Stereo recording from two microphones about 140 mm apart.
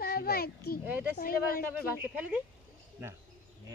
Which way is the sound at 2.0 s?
10° right (ahead or behind).